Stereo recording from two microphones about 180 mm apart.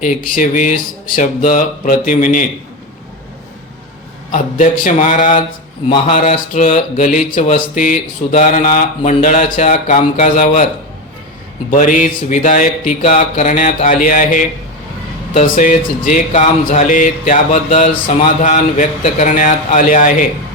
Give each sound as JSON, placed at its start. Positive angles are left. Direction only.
{"t": 0.0, "sound": "speech", "side_deg": 50}
{"t": 4.3, "sound": "speech", "side_deg": 50}
{"t": 11.7, "sound": "speech", "side_deg": 45}
{"t": 17.9, "sound": "mantra", "side_deg": 30}
{"t": 18.3, "sound": "speech", "side_deg": 45}